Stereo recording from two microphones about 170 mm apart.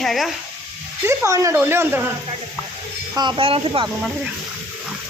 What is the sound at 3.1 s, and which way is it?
Speech, 25° right (ahead or behind).